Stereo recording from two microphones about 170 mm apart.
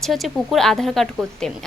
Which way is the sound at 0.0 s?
Centre (ahead or behind).